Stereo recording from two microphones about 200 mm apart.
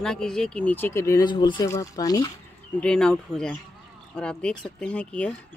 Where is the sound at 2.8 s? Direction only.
5° left (ahead or behind).